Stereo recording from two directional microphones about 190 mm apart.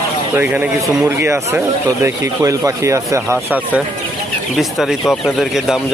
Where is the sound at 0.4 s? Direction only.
10° right (ahead or behind).